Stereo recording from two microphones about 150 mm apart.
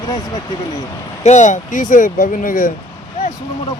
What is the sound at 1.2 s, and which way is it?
Speech, 55° left (ahead or behind).